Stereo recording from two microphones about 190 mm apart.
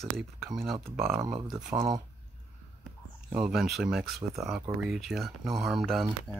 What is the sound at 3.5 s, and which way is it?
Speech, centre (ahead or behind).